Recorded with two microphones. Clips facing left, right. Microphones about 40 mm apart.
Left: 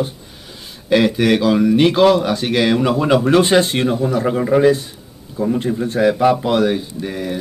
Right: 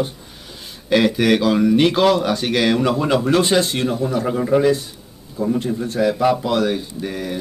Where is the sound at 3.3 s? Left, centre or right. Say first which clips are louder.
Left 4 dB; left.